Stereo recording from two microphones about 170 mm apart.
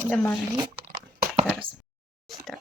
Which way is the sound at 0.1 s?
10° left (ahead or behind).